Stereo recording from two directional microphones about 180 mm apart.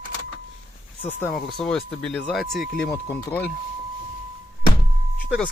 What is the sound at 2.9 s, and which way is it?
Speech, 15° left (ahead or behind).